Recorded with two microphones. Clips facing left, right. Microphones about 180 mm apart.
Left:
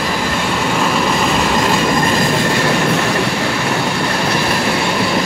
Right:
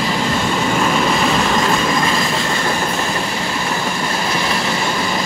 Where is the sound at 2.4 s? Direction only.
75° left (ahead or behind).